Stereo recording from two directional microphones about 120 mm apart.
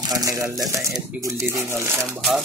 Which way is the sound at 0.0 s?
30° right (ahead or behind).